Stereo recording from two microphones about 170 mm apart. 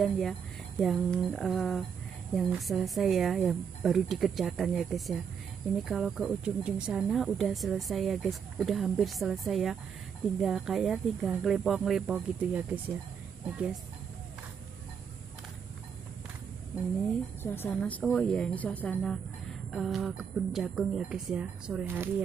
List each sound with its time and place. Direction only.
0.0 s speech: centre (ahead or behind)
17.4 s speech: 10° left (ahead or behind); by 22.1 s 10° right (ahead or behind)